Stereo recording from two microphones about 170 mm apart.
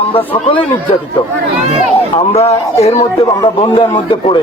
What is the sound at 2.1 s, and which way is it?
Speech, 35° left (ahead or behind).